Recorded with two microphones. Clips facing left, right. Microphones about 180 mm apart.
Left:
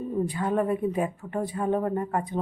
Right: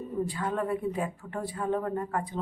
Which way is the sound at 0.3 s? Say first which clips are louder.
Left 4 dB; 20° left (ahead or behind).